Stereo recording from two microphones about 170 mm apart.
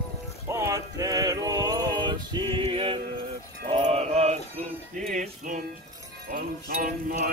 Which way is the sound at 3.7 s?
40° right (ahead or behind).